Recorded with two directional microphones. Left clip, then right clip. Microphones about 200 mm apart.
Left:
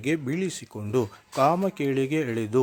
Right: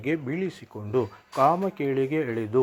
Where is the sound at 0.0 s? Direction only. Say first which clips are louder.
Left 1 dB; 30° left (ahead or behind).